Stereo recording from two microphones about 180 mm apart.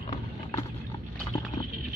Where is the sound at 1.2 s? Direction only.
25° left (ahead or behind).